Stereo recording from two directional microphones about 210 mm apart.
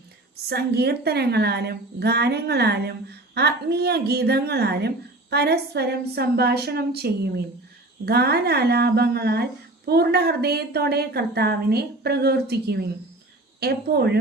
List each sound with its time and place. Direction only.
0.4 s speech: 50° right (ahead or behind)